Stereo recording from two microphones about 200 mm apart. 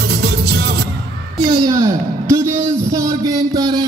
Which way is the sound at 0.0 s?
55° right (ahead or behind).